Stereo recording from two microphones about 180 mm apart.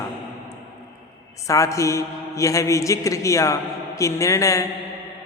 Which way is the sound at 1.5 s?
15° left (ahead or behind).